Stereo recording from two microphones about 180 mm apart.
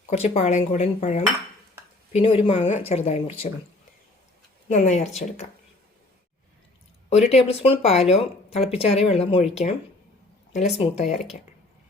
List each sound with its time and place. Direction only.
0.0 s speech: 35° left (ahead or behind)
4.7 s speech: 40° left (ahead or behind)
7.1 s speech: 35° left (ahead or behind)
10.5 s speech: 40° left (ahead or behind)